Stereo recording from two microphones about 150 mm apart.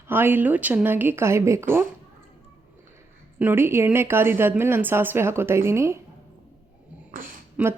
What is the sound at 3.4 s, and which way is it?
Speech, 15° right (ahead or behind).